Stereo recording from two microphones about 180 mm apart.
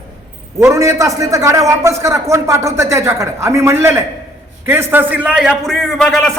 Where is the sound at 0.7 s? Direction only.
15° right (ahead or behind).